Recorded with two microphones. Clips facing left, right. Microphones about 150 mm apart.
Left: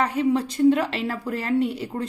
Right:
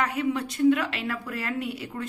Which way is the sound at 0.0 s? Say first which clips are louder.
Left 5 dB; 30° left (ahead or behind).